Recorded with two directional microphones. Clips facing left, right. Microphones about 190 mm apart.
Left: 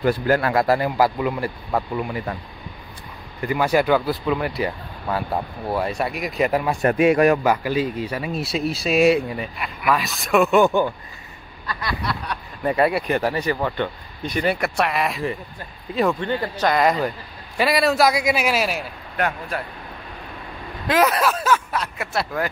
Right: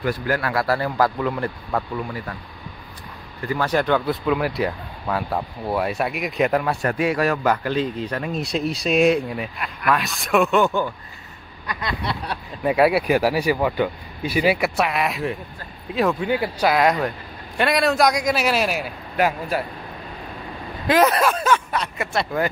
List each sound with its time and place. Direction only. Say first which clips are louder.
0.0 s a man's voice: left 4 dB; 25° left (ahead or behind)
3.4 s speech: left 2 dB; 10° left (ahead or behind)
6.8 s a man's voice: left 5 dB; 20° left (ahead or behind)
7.4 s speech: left 1 dB; 10° left (ahead or behind)
11.6 s speech: even; 20° right (ahead or behind)
12.6 s speech: right 2 dB; 5° right (ahead or behind)
20.8 s speech: right 2 dB; centre (ahead or behind)